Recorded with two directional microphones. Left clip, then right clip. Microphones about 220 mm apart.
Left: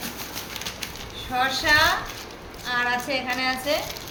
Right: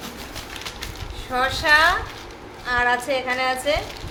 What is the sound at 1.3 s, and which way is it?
A woman's voice, 45° right (ahead or behind).